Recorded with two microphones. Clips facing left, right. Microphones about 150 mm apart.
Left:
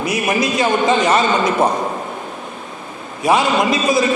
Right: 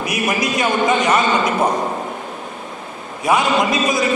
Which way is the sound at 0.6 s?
30° left (ahead or behind).